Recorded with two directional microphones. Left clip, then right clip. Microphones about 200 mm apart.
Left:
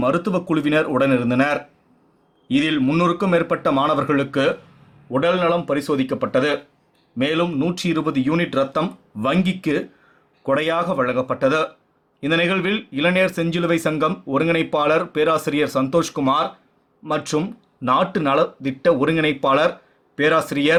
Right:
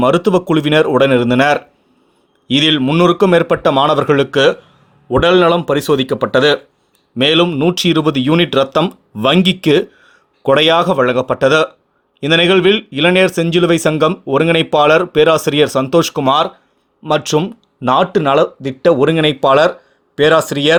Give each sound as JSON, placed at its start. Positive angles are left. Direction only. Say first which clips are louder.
{"t": 0.0, "sound": "speech", "louder": "right 8 dB", "side_deg": -45}